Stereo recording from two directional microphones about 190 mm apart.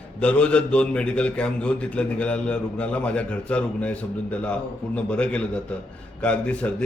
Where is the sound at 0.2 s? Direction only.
5° left (ahead or behind).